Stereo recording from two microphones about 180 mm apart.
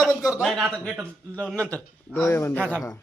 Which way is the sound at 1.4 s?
5° left (ahead or behind).